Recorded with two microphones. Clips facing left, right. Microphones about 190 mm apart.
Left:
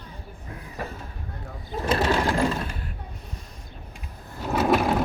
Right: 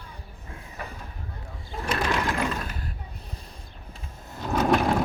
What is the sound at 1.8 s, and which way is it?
Sewing machine, 30° left (ahead or behind).